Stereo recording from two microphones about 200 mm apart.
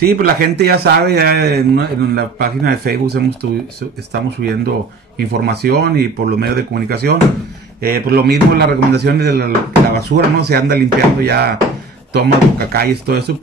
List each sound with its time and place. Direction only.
0.0 s a man's voice: 50° right (ahead or behind)
5.3 s a man's voice: 55° right (ahead or behind)